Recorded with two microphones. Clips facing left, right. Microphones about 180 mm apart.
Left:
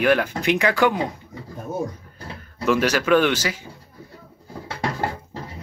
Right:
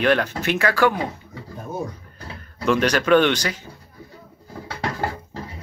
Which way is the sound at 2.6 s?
5° left (ahead or behind).